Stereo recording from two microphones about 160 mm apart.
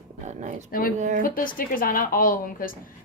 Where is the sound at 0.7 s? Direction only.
60° left (ahead or behind).